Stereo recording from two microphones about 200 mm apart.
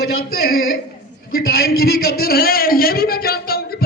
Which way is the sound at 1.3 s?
50° left (ahead or behind).